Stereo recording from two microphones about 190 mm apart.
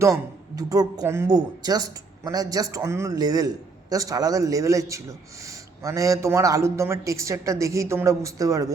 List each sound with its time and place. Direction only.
0.0 s a man's voice: 20° right (ahead or behind)